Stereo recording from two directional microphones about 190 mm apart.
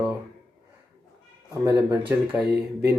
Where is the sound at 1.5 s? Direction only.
15° right (ahead or behind).